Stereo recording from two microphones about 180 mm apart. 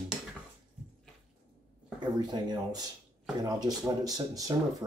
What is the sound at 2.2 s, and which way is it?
Speech, 25° right (ahead or behind).